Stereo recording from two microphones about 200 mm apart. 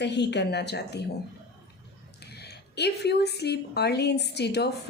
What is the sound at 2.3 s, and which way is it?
A woman's voice, 55° left (ahead or behind).